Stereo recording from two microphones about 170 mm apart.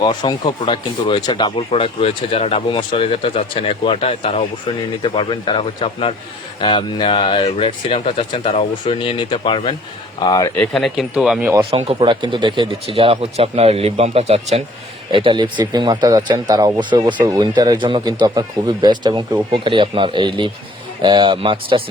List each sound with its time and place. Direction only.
0.0 s speech: 25° left (ahead or behind)
10.6 s speech: centre (ahead or behind)
11.7 s speech: 35° right (ahead or behind)